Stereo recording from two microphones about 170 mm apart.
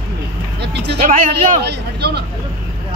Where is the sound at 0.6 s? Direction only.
90° right.